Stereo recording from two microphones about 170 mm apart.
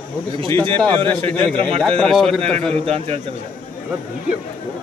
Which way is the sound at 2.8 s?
35° right (ahead or behind).